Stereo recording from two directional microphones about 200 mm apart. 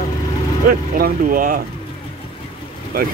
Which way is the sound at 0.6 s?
45° right (ahead or behind).